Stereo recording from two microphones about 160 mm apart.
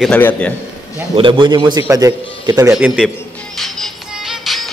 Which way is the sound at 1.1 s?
30° right (ahead or behind).